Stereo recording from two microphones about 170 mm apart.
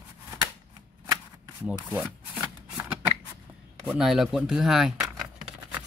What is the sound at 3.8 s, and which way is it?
Speech, centre (ahead or behind).